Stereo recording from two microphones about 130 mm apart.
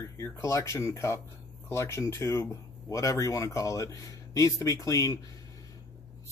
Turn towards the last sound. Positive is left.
turn(degrees=25)  # may be behind; listen again after turning